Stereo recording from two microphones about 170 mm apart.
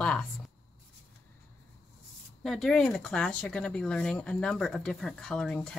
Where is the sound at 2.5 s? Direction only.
Centre (ahead or behind).